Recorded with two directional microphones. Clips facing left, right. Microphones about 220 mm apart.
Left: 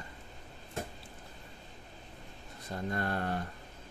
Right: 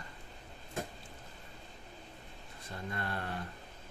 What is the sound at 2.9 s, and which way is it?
Speech, 45° left (ahead or behind).